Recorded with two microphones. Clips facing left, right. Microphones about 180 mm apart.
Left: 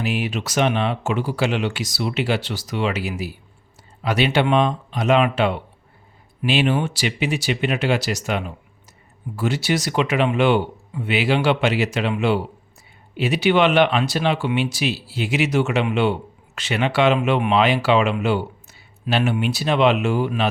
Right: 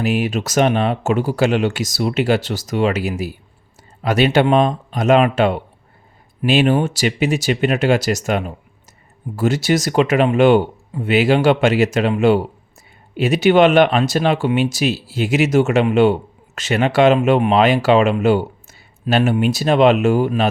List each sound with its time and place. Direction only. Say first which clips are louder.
0.0 s speech: right 5 dB; 45° right (ahead or behind)